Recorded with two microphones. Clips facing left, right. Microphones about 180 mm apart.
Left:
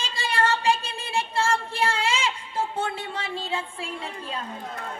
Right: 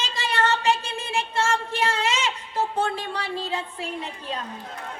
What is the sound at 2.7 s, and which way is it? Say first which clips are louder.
Music: right 3 dB; 25° left (ahead or behind).